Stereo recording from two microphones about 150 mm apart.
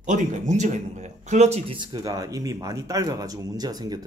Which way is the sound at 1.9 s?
25° right (ahead or behind).